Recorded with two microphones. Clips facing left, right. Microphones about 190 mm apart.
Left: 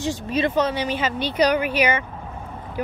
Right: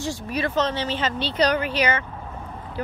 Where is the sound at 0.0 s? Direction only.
20° left (ahead or behind).